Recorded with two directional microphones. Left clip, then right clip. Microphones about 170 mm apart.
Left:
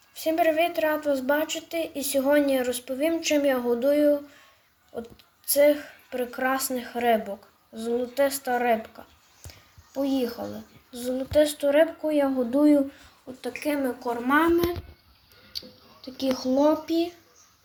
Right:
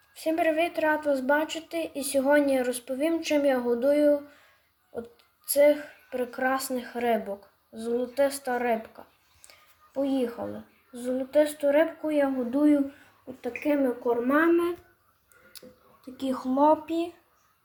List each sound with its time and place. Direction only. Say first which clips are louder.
0.1 s a woman's voice: left 3 dB; 5° right (ahead or behind)
9.5 s music: left 2 dB; centre (ahead or behind)
10.9 s speech: left 1 dB; 10° left (ahead or behind)
12.5 s speech: left 5 dB; 20° left (ahead or behind)
13.4 s a woman's voice: right 1 dB; centre (ahead or behind)
16.8 s a woman's voice: left 4 dB; 5° right (ahead or behind)